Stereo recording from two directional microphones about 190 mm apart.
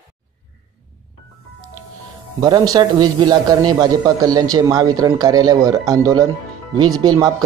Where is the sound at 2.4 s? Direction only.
20° right (ahead or behind).